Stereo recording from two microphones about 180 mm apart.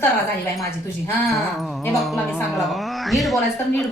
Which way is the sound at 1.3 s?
Centre (ahead or behind).